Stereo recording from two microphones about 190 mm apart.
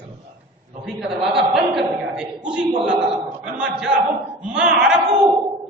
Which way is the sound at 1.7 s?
5° right (ahead or behind).